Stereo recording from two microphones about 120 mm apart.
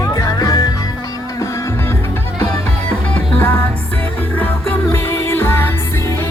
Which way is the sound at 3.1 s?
15° left (ahead or behind).